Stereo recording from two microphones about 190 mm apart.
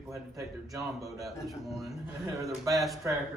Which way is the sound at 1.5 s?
Centre (ahead or behind).